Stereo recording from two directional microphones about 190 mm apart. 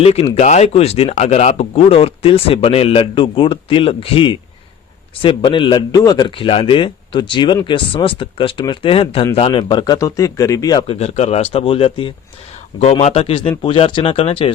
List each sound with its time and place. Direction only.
0.0 s a man's voice: 30° left (ahead or behind)
10.9 s a man's voice: 35° left (ahead or behind)